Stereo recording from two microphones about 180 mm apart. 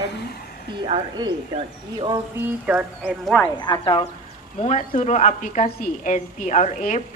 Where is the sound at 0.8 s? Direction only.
30° right (ahead or behind).